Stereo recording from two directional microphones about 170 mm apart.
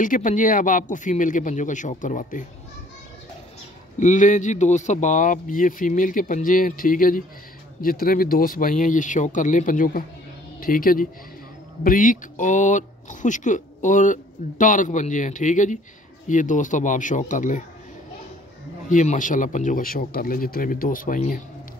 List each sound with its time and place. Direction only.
0.0 s speech: 50° left (ahead or behind)
4.0 s speech: 45° left (ahead or behind)
18.9 s speech: 50° left (ahead or behind)